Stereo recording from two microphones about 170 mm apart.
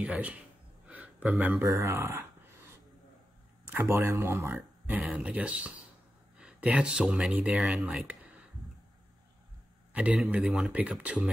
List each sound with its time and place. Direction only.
0.0 s speech: 5° right (ahead or behind)
0.8 s a sound: 10° right (ahead or behind)
1.6 s speech: 15° right (ahead or behind)
3.6 s speech: 10° right (ahead or behind)
9.9 s speech: 5° right (ahead or behind)